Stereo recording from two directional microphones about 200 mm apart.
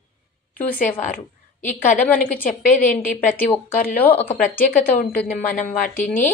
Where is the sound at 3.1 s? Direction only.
40° left (ahead or behind).